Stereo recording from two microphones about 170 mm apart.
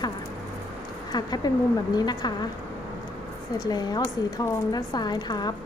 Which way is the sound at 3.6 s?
25° left (ahead or behind).